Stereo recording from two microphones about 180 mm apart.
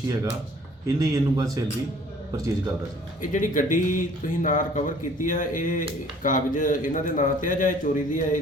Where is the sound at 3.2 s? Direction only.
45° left (ahead or behind).